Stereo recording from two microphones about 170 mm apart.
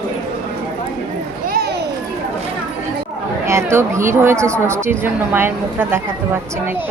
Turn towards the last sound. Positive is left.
turn(degrees=-10)  # may be behind; listen again after turning